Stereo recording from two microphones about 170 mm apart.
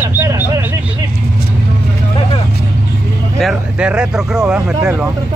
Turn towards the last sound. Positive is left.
turn(degrees=-10)  # may be behind; listen again after turning